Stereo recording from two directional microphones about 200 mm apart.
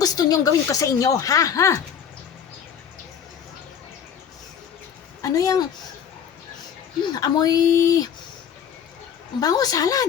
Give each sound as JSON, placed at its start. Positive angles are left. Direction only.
{"t": 0.0, "sound": "speech", "side_deg": 20}
{"t": 5.2, "sound": "speech", "side_deg": 15}
{"t": 7.2, "sound": "speech", "side_deg": 20}
{"t": 9.4, "sound": "speech", "side_deg": 20}